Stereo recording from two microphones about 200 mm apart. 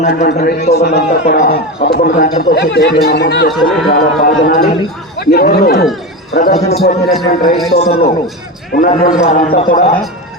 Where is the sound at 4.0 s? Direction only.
45° left (ahead or behind).